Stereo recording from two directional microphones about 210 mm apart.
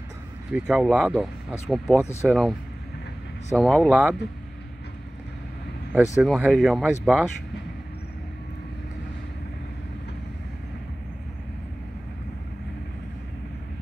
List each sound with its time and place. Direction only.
0.5 s speech: 5° right (ahead or behind)
3.5 s speech: centre (ahead or behind)
6.2 s speech: centre (ahead or behind)